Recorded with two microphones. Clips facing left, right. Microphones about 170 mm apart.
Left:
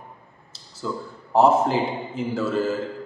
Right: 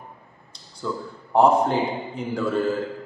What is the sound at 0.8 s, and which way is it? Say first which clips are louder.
A man's voice: right 1 dB; 10° left (ahead or behind).